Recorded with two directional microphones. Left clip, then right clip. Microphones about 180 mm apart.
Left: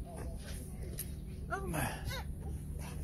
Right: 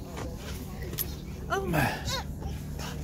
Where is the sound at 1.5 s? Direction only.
45° right (ahead or behind).